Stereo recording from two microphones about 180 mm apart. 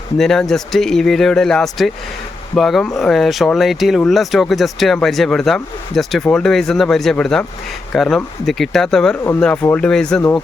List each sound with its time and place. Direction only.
0.2 s speech: centre (ahead or behind)